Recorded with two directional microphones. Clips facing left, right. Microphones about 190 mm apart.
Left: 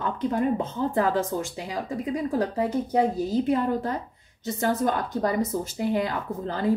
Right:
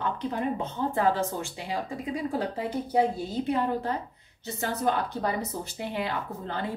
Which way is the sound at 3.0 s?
40° left (ahead or behind).